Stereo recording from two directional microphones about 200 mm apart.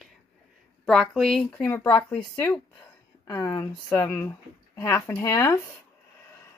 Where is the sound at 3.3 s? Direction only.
20° left (ahead or behind).